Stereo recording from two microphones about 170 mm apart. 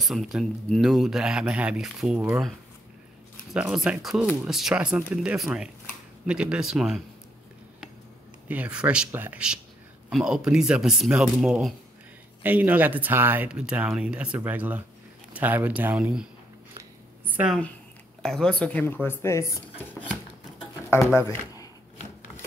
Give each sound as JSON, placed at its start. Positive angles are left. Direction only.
{"t": 0.0, "sound": "speech", "side_deg": 0}
{"t": 3.5, "sound": "speech", "side_deg": -5}
{"t": 8.5, "sound": "speech", "side_deg": -5}
{"t": 18.2, "sound": "speech", "side_deg": 5}